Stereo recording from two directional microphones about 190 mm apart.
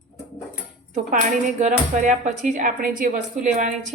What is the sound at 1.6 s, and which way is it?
Speech, 40° right (ahead or behind).